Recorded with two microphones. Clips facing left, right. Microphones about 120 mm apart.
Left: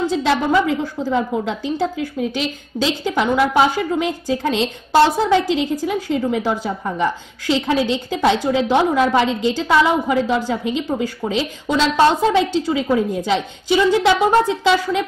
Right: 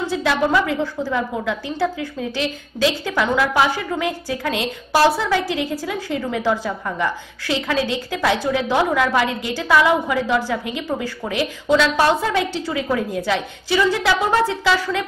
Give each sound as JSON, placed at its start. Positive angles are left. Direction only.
{"t": 0.1, "sound": "a woman's voice", "side_deg": 25}